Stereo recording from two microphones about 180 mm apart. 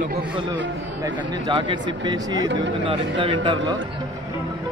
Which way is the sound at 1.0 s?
20° right (ahead or behind).